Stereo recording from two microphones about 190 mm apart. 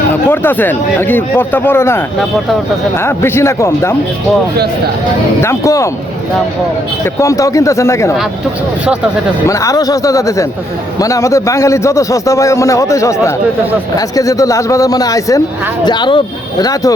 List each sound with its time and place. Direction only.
0.1 s a man's voice: 10° left (ahead or behind)
5.4 s a man's voice: 15° left (ahead or behind)
7.0 s a man's voice: 15° left (ahead or behind)
9.5 s a man's voice: 15° left (ahead or behind)